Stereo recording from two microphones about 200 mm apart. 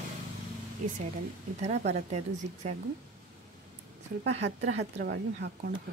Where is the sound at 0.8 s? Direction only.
35° right (ahead or behind).